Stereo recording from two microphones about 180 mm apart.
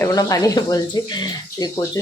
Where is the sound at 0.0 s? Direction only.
20° left (ahead or behind).